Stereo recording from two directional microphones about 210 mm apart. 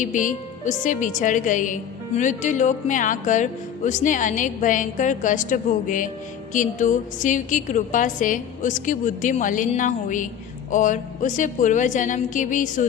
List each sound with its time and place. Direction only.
0.0 s a woman's voice: 35° left (ahead or behind)